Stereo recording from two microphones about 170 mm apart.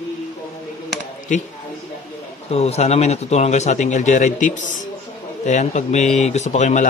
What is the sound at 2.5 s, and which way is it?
A man's voice, 40° left (ahead or behind).